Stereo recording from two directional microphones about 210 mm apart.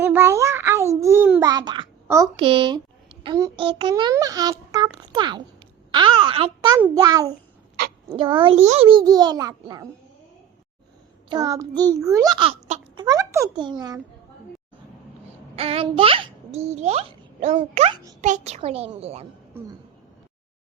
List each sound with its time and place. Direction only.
0.0 s a child's voice: 10° right (ahead or behind)
6.7 s a child's voice: 15° right (ahead or behind); by 9.0 s 30° right (ahead or behind)
9.0 s a child's voice: 20° right (ahead or behind)
11.3 s a child's voice: 15° right (ahead or behind)
13.1 s a child's voice: 15° right (ahead or behind)
15.5 s a child's voice: 25° right (ahead or behind)